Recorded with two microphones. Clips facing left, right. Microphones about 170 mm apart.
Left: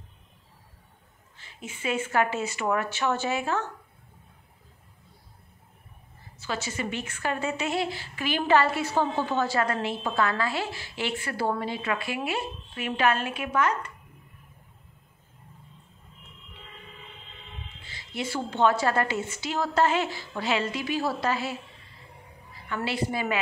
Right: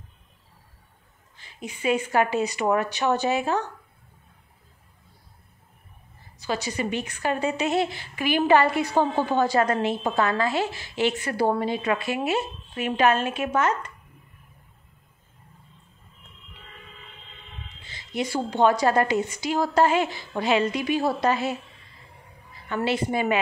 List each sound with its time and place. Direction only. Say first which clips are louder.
1.4 s a woman's voice: right 5 dB; 15° right (ahead or behind)
6.4 s a woman's voice: right 4 dB; 15° right (ahead or behind)
17.8 s a woman's voice: right 5 dB; 20° right (ahead or behind)
22.8 s a woman's voice: right 5 dB; 20° right (ahead or behind)